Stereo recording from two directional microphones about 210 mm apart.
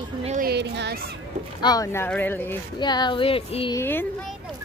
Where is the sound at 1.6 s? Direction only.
20° left (ahead or behind).